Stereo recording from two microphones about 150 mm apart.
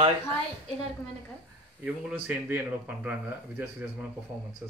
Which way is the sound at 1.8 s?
10° right (ahead or behind).